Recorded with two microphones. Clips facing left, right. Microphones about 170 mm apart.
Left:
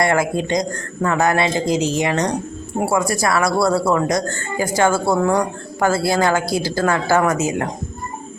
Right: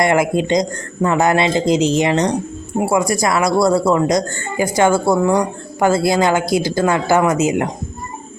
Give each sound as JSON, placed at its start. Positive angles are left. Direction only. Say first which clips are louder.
{"t": 0.0, "sound": "speech", "louder": "right 3 dB", "side_deg": -20}